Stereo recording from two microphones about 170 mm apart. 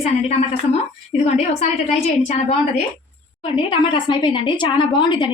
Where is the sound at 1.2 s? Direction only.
40° left (ahead or behind).